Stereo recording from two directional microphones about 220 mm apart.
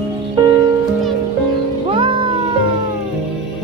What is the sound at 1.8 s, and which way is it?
Music, 20° right (ahead or behind).